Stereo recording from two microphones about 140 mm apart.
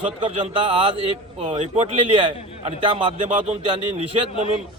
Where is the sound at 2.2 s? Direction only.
40° right (ahead or behind).